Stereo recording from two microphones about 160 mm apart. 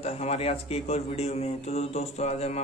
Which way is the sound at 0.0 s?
40° left (ahead or behind).